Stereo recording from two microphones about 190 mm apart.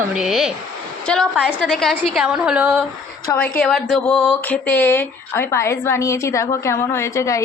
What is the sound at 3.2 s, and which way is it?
A child's voice, 10° left (ahead or behind).